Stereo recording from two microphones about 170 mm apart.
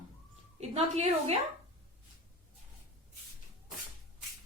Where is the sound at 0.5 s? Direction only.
40° right (ahead or behind).